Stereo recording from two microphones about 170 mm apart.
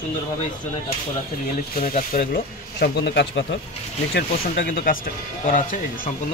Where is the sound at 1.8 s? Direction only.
60° left (ahead or behind); by 3.4 s 90° left.